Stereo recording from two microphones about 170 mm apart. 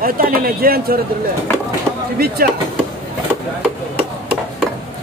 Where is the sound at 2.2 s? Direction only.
65° right (ahead or behind).